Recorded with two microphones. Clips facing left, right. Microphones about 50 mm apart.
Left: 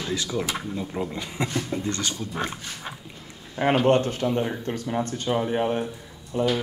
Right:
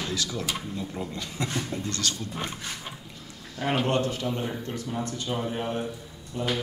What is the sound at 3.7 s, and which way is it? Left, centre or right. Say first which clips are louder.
Speech: left 5 dB; left.